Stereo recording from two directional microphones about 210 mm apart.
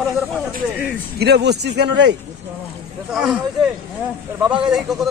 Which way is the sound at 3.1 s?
5° right (ahead or behind).